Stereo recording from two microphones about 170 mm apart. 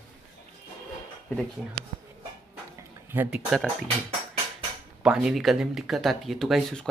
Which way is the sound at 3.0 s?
10° right (ahead or behind).